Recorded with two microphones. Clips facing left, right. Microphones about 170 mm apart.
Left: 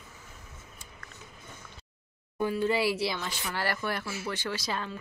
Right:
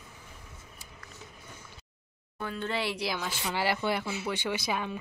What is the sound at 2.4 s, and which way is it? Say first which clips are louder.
Speech: left 6 dB; 10° left (ahead or behind).